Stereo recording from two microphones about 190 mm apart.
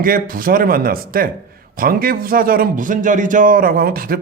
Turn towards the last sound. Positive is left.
turn(degrees=-50)  # may be behind; listen again after turning